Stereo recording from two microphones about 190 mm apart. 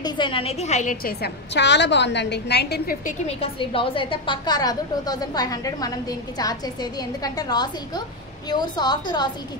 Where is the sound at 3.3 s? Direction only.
30° left (ahead or behind).